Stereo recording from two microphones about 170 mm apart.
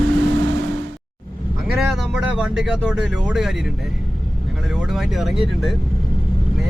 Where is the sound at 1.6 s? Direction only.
Centre (ahead or behind).